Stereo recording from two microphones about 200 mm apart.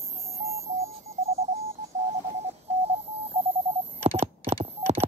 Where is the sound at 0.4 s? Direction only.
35° right (ahead or behind).